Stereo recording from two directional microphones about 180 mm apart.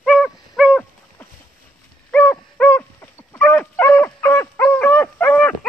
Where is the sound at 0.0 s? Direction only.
Centre (ahead or behind).